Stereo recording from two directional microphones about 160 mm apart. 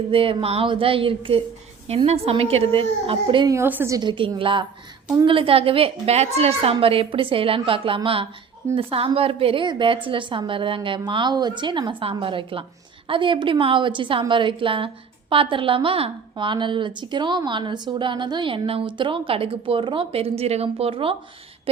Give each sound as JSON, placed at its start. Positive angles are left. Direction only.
{"t": 0.1, "sound": "a woman's voice", "side_deg": -35}
{"t": 3.5, "sound": "a woman's voice", "side_deg": -15}